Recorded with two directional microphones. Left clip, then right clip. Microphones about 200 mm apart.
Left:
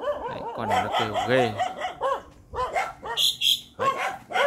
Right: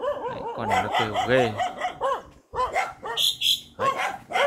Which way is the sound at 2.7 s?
35° right (ahead or behind).